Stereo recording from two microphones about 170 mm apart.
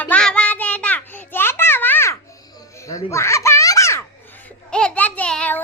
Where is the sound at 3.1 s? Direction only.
15° left (ahead or behind).